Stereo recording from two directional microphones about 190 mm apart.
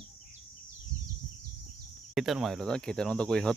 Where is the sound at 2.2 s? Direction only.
Centre (ahead or behind).